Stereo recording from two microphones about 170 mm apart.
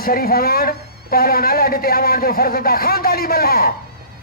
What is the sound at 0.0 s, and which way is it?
A man's voice, 60° left (ahead or behind).